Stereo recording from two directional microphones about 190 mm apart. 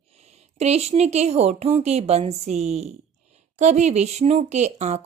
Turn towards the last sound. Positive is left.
turn(degrees=-35)  # may be behind; listen again after turning